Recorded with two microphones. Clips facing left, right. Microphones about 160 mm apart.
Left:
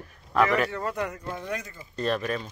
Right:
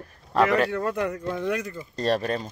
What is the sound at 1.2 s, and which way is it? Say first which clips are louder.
Speech: right 6 dB; 80° right.